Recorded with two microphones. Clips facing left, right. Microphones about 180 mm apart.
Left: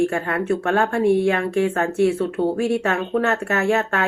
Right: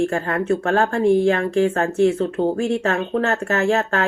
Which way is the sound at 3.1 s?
30° right (ahead or behind).